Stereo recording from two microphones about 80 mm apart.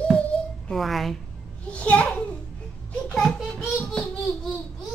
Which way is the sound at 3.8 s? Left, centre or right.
Centre.